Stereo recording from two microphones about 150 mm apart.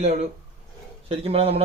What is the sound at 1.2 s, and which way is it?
Speech, 40° right (ahead or behind).